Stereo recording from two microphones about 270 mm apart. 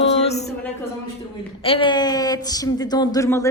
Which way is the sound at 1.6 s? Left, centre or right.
Centre.